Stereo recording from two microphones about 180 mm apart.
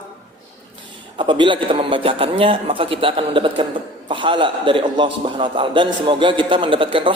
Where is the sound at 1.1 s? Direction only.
25° right (ahead or behind).